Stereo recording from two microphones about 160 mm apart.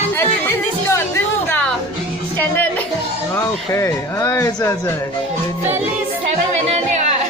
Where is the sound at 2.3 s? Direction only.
10° left (ahead or behind).